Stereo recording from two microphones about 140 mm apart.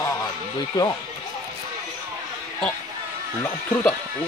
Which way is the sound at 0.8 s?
30° left (ahead or behind).